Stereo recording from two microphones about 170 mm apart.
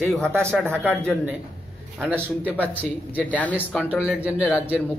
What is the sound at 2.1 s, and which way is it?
Speech, 10° left (ahead or behind).